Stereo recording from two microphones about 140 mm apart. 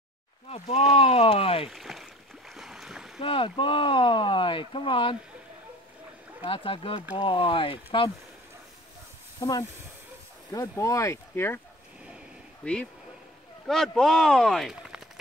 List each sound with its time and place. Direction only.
0.5 s speech: 50° left (ahead or behind)
1.7 s boat: centre (ahead or behind)
3.2 s speech: 40° left (ahead or behind)
6.4 s speech: 40° left (ahead or behind)
9.4 s speech: 25° left (ahead or behind)
13.7 s a man's voice: 5° left (ahead or behind)